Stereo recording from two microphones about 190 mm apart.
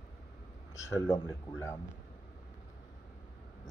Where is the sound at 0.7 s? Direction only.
15° left (ahead or behind).